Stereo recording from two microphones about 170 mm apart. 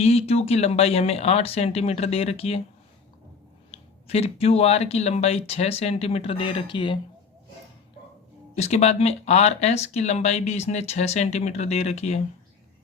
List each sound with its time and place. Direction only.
0.0 s speech: 35° left (ahead or behind)
3.7 s speech: 35° left (ahead or behind)
8.5 s speech: 40° left (ahead or behind)